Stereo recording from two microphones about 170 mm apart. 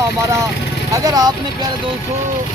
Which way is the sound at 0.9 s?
20° right (ahead or behind).